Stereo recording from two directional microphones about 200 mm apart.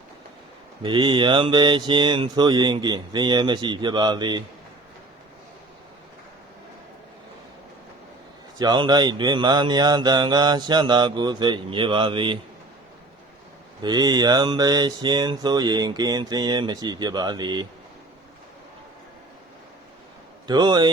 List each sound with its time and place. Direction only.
0.8 s speech: 25° right (ahead or behind)
8.5 s speech: 20° right (ahead or behind)
13.8 s speech: 20° right (ahead or behind)
20.5 s speech: 20° right (ahead or behind)